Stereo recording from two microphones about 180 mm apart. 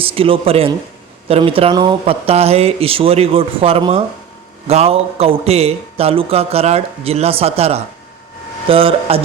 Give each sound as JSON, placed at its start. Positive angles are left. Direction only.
{"t": 0.0, "sound": "speech", "side_deg": -30}